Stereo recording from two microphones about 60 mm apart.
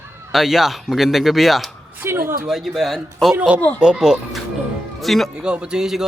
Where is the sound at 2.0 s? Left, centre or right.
Right.